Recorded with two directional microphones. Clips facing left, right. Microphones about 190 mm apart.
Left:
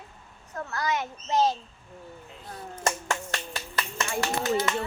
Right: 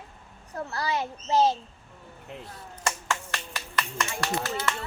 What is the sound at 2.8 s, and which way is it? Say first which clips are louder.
Finger snapping: left 2 dB; 35° left (ahead or behind).